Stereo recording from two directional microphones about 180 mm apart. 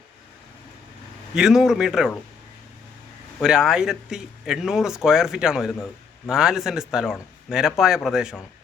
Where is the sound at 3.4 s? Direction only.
5° right (ahead or behind).